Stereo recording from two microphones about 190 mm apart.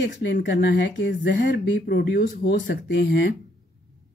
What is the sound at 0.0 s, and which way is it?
Speech, 65° left (ahead or behind).